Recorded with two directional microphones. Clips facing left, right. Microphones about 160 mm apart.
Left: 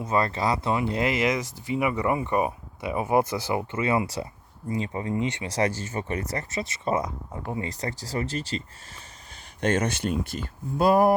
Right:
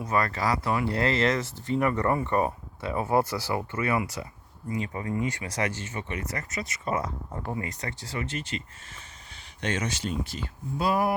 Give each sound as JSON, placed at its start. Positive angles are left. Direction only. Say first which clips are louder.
{"t": 0.0, "sound": "speech", "louder": "left 2 dB", "side_deg": 25}
{"t": 9.6, "sound": "speech", "louder": "left 6 dB", "side_deg": 50}